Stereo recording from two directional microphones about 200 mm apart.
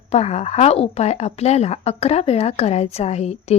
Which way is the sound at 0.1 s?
30° left (ahead or behind).